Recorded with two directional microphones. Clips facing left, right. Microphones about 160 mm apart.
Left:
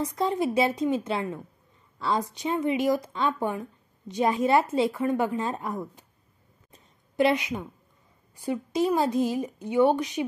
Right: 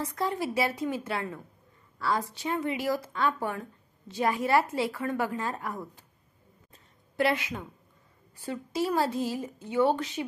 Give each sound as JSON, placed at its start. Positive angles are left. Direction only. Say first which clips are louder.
{"t": 0.0, "sound": "a woman's voice", "louder": "left 5 dB", "side_deg": 20}
{"t": 6.7, "sound": "a sound", "louder": "left 2 dB", "side_deg": 20}
{"t": 8.4, "sound": "a woman's voice", "louder": "left 5 dB", "side_deg": 15}